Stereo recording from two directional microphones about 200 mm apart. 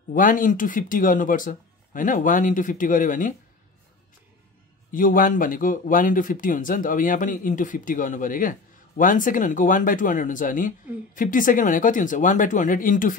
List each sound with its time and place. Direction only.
0.1 s speech: 40° left (ahead or behind)
4.9 s speech: 40° left (ahead or behind)